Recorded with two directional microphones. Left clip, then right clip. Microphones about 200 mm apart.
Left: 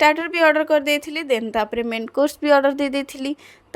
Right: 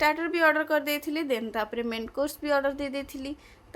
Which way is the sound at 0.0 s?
35° left (ahead or behind).